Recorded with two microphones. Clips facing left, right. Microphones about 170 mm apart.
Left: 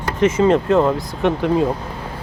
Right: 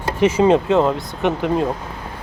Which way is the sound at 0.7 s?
Centre (ahead or behind).